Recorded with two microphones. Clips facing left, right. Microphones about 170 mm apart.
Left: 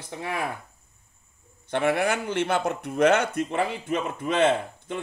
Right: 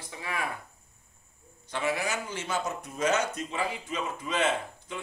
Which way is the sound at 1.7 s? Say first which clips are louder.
Left 7 dB; 60° left (ahead or behind).